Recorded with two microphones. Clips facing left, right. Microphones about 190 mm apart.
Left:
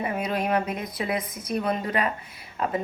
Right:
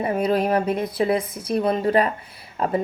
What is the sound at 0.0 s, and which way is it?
Speech, 35° right (ahead or behind).